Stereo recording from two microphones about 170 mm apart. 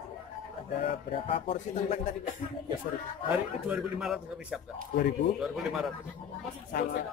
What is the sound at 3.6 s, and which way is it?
A man's voice, 5° right (ahead or behind).